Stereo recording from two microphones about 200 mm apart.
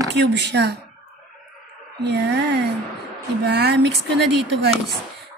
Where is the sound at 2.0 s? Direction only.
55° right (ahead or behind).